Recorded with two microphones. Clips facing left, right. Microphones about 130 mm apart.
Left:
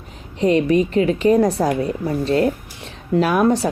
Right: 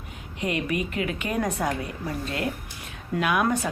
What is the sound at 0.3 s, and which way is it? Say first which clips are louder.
Speech: left 12 dB; 35° left (ahead or behind).